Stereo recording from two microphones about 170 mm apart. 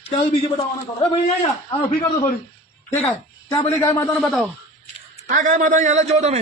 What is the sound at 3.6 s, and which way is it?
Speech, 20° left (ahead or behind).